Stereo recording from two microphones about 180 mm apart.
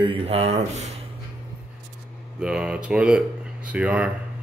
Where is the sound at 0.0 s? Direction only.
30° right (ahead or behind).